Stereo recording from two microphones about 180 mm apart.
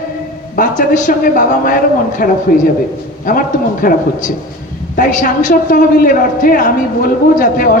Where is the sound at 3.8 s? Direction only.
45° left (ahead or behind).